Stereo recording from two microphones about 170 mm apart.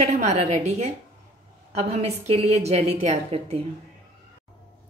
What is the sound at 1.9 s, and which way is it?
A woman's voice, 40° right (ahead or behind).